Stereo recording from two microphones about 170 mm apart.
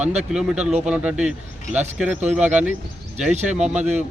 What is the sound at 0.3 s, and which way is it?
A man's voice, 5° right (ahead or behind).